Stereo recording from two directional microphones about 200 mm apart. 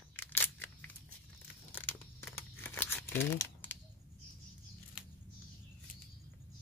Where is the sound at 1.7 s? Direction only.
10° left (ahead or behind).